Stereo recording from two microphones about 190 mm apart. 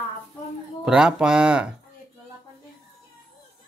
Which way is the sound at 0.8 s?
5° right (ahead or behind).